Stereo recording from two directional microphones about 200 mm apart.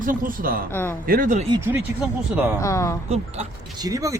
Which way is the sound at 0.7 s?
10° left (ahead or behind).